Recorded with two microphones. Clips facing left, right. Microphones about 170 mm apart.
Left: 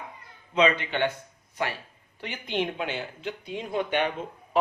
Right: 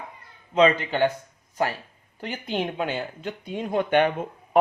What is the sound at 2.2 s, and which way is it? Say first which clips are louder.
A man's voice: right 1 dB; 40° right (ahead or behind).